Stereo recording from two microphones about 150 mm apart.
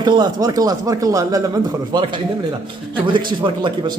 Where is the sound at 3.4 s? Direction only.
30° right (ahead or behind).